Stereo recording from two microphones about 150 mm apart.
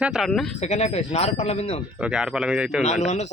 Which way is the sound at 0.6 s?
50° left (ahead or behind).